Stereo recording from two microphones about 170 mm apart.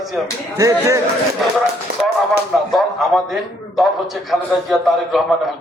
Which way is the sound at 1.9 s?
70° right (ahead or behind).